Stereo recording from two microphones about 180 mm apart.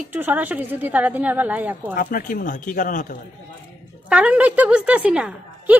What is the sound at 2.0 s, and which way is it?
Speech, 50° left (ahead or behind).